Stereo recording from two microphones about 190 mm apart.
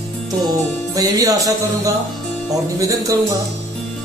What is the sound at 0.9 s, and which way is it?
Music, 20° right (ahead or behind).